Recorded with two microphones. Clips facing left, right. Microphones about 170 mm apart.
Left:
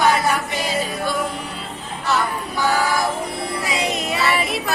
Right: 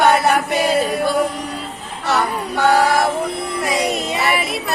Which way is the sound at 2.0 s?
70° right (ahead or behind).